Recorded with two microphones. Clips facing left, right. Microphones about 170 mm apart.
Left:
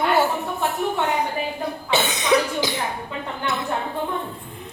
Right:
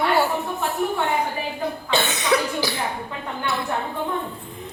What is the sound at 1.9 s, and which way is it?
Speech, 20° left (ahead or behind).